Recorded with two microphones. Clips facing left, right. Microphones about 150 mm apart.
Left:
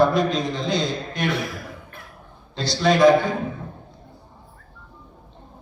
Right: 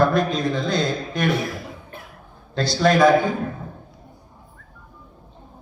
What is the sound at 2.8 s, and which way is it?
Speech, 50° right (ahead or behind).